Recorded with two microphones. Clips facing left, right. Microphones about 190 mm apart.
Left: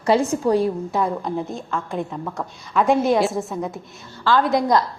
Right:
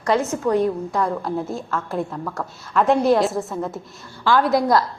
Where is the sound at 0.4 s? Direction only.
35° left (ahead or behind).